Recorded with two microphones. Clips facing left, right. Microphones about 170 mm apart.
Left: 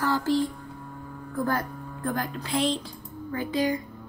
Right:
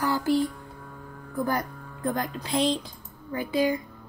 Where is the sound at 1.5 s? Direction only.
15° right (ahead or behind).